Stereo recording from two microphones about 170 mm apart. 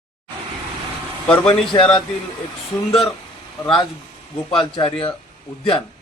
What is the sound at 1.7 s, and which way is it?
Speech, 20° left (ahead or behind).